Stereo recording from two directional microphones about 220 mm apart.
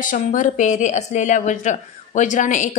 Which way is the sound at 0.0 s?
35° left (ahead or behind).